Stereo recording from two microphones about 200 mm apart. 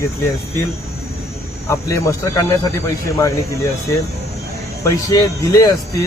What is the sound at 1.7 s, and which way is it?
Speech, 15° left (ahead or behind).